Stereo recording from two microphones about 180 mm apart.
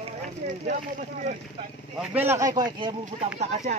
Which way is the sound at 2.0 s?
10° right (ahead or behind).